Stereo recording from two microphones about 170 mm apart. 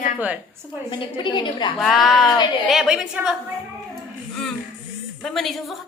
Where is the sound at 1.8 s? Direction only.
Centre (ahead or behind).